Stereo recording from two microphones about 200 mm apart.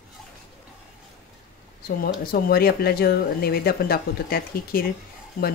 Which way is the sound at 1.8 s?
50° left (ahead or behind).